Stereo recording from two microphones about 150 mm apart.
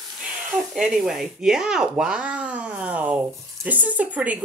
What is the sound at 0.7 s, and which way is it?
Speech, centre (ahead or behind).